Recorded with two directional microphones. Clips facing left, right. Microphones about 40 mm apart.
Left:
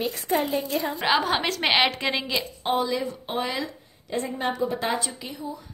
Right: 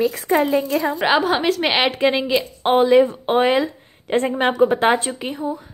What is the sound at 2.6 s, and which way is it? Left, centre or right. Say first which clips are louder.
Speech: right 13 dB; right.